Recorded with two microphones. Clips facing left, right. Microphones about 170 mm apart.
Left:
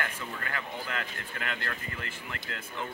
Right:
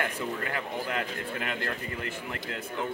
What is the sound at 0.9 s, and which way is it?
Speech, 25° right (ahead or behind).